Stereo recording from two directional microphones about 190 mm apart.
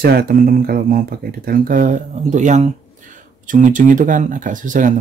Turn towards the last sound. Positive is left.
turn(degrees=-45)  # may be behind; listen again after turning